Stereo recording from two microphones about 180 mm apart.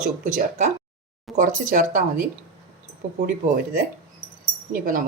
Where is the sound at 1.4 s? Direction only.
45° right (ahead or behind).